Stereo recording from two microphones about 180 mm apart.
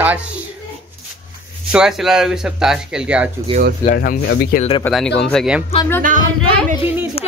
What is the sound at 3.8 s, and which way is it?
Speech, 55° left (ahead or behind).